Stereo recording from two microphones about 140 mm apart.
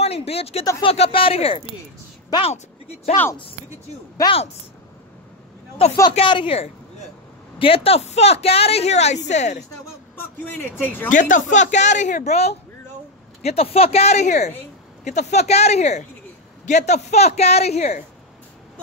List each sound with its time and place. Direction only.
0.0 s speech: 45° left (ahead or behind)
2.3 s speech: 30° left (ahead or behind)
4.2 s speech: 25° left (ahead or behind)
5.8 s speech: 45° left (ahead or behind)
10.1 s speech: 15° left (ahead or behind)
11.1 s speech: 65° left (ahead or behind)